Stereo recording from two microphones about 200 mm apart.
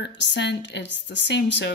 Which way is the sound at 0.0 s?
60° left (ahead or behind).